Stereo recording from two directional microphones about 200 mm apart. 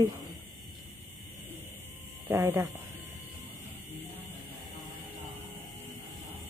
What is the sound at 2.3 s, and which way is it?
Speech, 10° right (ahead or behind).